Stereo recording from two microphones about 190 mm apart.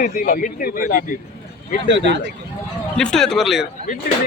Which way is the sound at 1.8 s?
65° right (ahead or behind).